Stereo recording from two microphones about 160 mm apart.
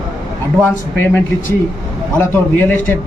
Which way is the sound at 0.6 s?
15° left (ahead or behind).